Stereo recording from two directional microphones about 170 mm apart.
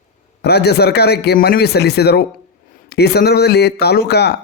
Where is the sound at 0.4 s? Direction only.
75° left (ahead or behind).